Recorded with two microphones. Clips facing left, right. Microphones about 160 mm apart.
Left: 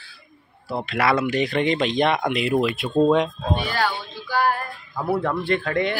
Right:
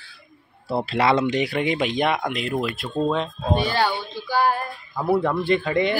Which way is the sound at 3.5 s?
25° right (ahead or behind).